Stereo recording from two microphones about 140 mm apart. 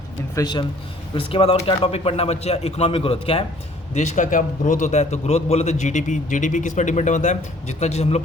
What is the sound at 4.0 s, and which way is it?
A man's voice, 60° left (ahead or behind).